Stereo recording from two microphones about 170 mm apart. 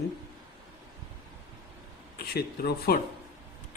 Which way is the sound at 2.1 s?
70° left (ahead or behind).